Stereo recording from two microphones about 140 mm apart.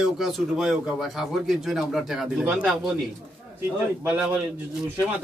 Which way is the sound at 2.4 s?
15° right (ahead or behind).